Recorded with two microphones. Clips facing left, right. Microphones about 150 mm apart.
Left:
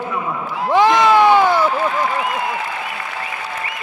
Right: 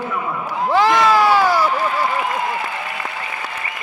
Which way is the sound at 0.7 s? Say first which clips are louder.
Left 2 dB; 20° left (ahead or behind).